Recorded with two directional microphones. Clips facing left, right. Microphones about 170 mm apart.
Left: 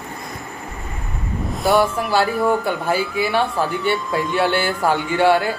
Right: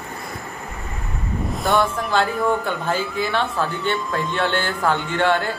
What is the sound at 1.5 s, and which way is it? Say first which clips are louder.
Speech: left 3 dB; centre (ahead or behind).